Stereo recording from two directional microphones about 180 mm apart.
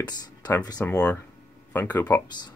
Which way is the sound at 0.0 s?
20° left (ahead or behind).